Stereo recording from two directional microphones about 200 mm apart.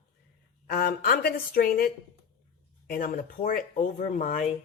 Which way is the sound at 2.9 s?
40° left (ahead or behind).